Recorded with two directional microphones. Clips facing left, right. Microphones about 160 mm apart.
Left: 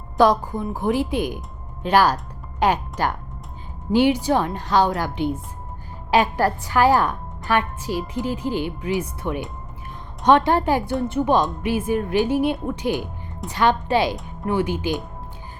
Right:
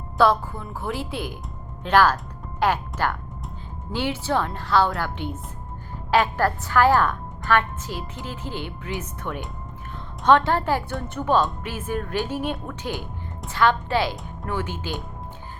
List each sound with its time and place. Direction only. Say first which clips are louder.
0.2 s a woman's voice: left 3 dB; 15° left (ahead or behind)